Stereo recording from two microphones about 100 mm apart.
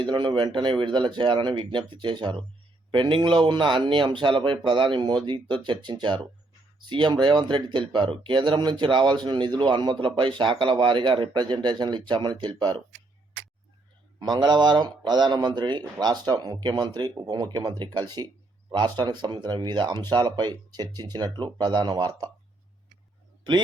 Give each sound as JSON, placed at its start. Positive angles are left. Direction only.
{"t": 0.0, "sound": "speech", "side_deg": -55}
{"t": 14.2, "sound": "speech", "side_deg": -45}